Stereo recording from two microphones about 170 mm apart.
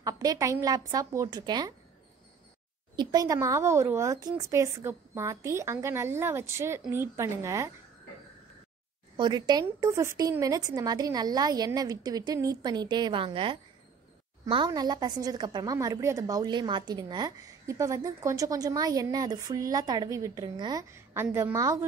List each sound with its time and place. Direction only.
0.0 s a woman's voice: 20° right (ahead or behind)
3.0 s a woman's voice: 20° right (ahead or behind)
9.1 s a woman's voice: 25° right (ahead or behind)